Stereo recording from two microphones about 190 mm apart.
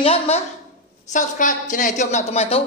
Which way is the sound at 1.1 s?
40° left (ahead or behind).